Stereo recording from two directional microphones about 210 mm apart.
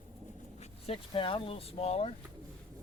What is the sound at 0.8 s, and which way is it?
Speech, 25° left (ahead or behind).